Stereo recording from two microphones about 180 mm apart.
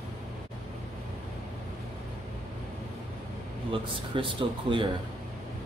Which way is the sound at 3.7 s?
30° right (ahead or behind).